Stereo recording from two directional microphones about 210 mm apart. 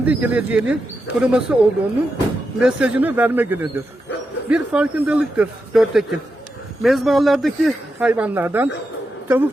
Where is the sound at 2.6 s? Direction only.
5° right (ahead or behind).